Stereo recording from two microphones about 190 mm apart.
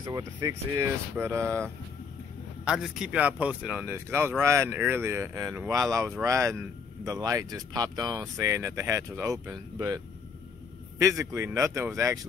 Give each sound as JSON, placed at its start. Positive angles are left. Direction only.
{"t": 0.0, "sound": "speech", "side_deg": -20}
{"t": 2.6, "sound": "speech", "side_deg": -5}
{"t": 11.0, "sound": "speech", "side_deg": -15}